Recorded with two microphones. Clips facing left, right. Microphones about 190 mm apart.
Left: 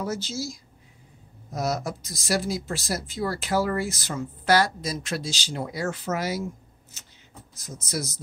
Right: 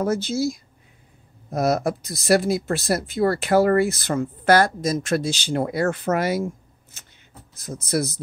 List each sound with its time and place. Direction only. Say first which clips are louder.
0.0 s speech: right 8 dB; 55° right (ahead or behind)